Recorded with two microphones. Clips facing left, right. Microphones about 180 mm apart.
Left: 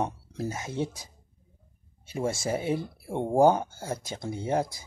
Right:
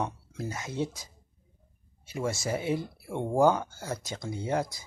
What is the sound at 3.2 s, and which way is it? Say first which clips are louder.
Speech: left 3 dB; 15° left (ahead or behind).